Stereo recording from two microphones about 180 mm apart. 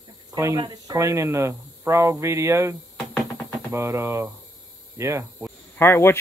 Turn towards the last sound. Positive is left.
turn(degrees=15)  # may be behind; listen again after turning